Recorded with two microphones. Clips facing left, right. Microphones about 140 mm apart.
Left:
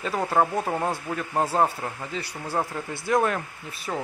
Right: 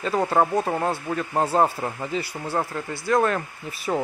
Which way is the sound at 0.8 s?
5° right (ahead or behind).